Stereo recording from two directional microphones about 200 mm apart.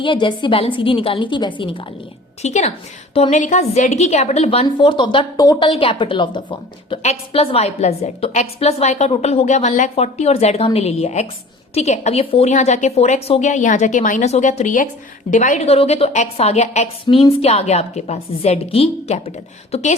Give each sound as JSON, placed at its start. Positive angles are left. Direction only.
{"t": 0.0, "sound": "a woman's voice", "side_deg": 25}
{"t": 2.4, "sound": "a woman's voice", "side_deg": 35}